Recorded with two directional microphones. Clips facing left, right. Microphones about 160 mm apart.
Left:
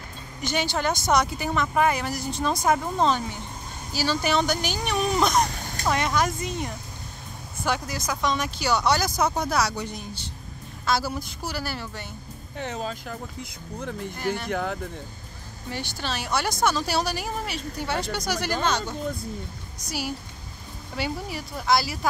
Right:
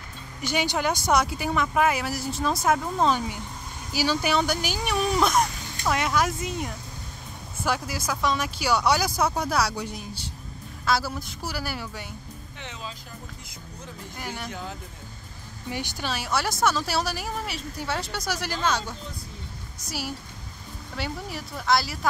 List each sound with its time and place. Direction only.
0.4 s speech: 10° right (ahead or behind)
12.5 s speech: 45° left (ahead or behind)
13.1 s speech: 60° left (ahead or behind)
14.1 s speech: 10° right (ahead or behind)
14.5 s speech: 60° left (ahead or behind)
15.7 s speech: 10° right (ahead or behind)
19.8 s speech: 5° right (ahead or behind)